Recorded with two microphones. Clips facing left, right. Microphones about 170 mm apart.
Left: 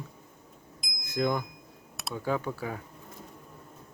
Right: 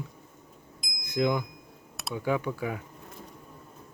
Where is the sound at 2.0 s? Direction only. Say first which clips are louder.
Right 2 dB; centre (ahead or behind).